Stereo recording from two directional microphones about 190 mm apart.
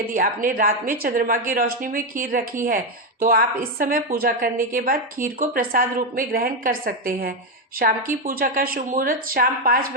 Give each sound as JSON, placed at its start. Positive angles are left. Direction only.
{"t": 0.1, "sound": "a woman's voice", "side_deg": -45}